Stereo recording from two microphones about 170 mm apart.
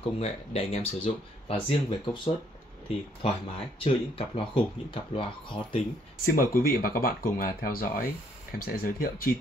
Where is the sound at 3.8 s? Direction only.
30° left (ahead or behind).